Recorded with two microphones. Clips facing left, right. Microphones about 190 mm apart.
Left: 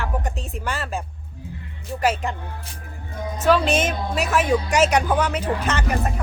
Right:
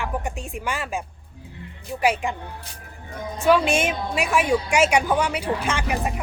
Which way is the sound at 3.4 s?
10° right (ahead or behind).